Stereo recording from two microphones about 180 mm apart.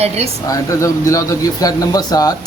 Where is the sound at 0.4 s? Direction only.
20° left (ahead or behind).